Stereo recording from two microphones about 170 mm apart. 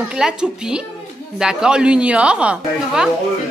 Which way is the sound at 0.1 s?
5° right (ahead or behind).